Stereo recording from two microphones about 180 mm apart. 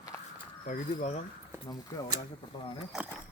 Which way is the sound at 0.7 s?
40° left (ahead or behind).